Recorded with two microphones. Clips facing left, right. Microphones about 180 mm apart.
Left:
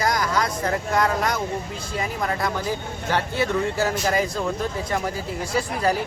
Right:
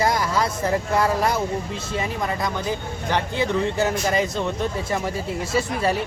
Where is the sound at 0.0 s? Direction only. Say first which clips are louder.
Right 1 dB; 25° right (ahead or behind).